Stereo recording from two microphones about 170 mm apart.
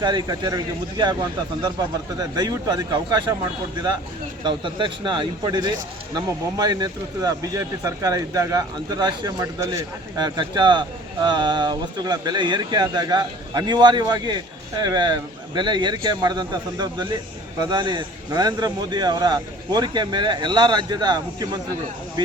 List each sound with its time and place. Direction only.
0.0 s speech: 25° right (ahead or behind)
2.1 s speech: 25° right (ahead or behind)
4.4 s speech: 30° right (ahead or behind)